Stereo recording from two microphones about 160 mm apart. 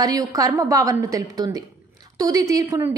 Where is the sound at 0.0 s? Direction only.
20° right (ahead or behind).